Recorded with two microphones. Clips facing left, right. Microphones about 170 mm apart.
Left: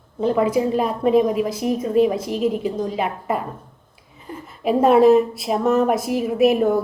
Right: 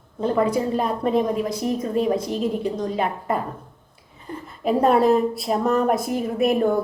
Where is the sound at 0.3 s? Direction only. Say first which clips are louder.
Left 2 dB; 5° left (ahead or behind).